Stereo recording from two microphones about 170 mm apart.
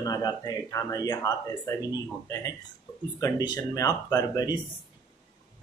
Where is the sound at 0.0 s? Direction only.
20° left (ahead or behind).